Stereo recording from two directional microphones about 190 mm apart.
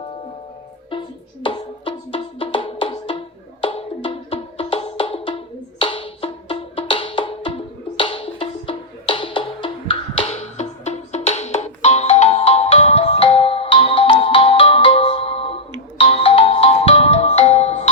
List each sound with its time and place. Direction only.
0.9 s music: 25° left (ahead or behind)
3.6 s wood block: 25° left (ahead or behind)
5.8 s music: 25° left (ahead or behind)